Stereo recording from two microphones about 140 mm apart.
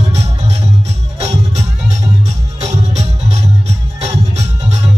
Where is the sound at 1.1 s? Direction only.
50° right (ahead or behind).